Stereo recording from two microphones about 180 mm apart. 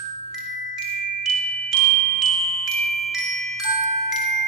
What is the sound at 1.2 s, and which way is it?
Glockenspiel, centre (ahead or behind).